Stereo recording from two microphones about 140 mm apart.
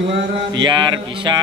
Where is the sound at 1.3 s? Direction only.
30° right (ahead or behind).